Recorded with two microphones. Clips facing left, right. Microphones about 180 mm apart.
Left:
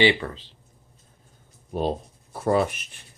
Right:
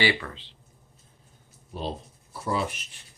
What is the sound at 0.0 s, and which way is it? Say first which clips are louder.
Speech: left 6 dB; 25° left (ahead or behind).